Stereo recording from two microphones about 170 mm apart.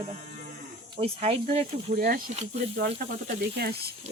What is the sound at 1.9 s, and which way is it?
Speech, 55° right (ahead or behind).